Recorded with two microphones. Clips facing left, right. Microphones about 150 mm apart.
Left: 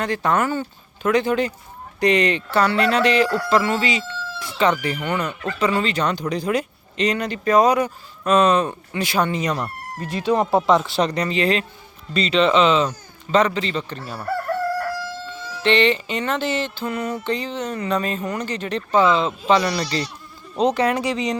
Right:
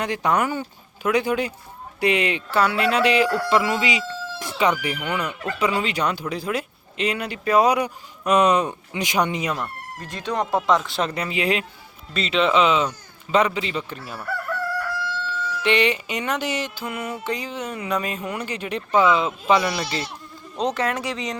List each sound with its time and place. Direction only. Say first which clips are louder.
0.0 s speech: left 1 dB; 15° right (ahead or behind)
9.6 s speech: left 3 dB; 5° left (ahead or behind)
14.8 s crowing: left 2 dB; 40° left (ahead or behind)
15.6 s speech: left 3 dB; 10° right (ahead or behind)